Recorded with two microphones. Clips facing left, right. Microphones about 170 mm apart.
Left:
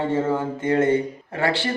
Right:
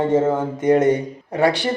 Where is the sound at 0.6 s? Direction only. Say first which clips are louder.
Right 4 dB; 15° right (ahead or behind).